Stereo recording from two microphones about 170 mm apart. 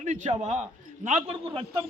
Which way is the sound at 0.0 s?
40° right (ahead or behind).